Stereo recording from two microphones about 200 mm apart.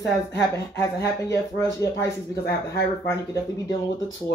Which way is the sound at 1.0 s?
15° left (ahead or behind).